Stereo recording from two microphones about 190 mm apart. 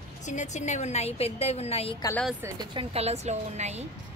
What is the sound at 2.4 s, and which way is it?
Speech, 25° right (ahead or behind).